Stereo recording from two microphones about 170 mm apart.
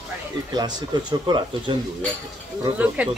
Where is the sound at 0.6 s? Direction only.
25° right (ahead or behind).